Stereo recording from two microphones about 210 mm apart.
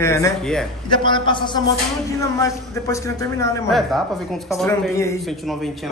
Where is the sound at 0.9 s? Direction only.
20° left (ahead or behind).